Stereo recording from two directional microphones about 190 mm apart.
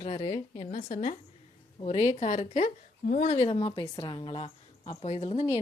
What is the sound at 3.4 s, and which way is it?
A woman's voice, 25° left (ahead or behind).